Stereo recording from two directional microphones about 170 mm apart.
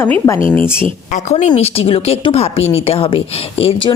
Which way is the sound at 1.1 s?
45° left (ahead or behind).